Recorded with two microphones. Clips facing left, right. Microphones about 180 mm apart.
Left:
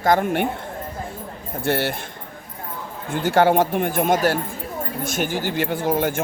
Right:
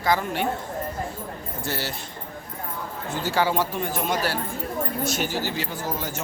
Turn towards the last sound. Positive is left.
turn(degrees=55)  # may be behind; listen again after turning